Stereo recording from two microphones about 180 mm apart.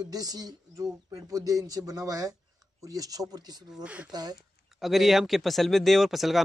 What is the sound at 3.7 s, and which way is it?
Speech, 5° right (ahead or behind).